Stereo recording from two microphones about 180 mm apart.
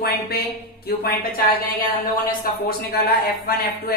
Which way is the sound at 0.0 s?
60° left (ahead or behind).